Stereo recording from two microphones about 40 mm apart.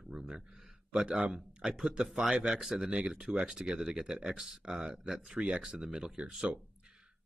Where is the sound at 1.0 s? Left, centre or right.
Right.